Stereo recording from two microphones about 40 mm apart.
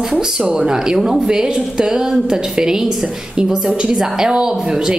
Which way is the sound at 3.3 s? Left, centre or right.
Right.